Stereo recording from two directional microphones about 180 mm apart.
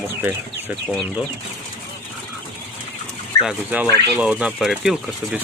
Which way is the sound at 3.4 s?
5° right (ahead or behind).